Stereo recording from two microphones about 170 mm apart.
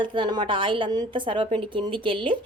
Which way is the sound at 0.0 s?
30° right (ahead or behind).